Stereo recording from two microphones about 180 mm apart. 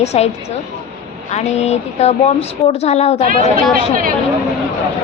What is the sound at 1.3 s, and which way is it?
A woman's voice, 35° left (ahead or behind).